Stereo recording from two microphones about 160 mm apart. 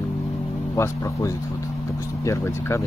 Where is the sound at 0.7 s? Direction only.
15° left (ahead or behind).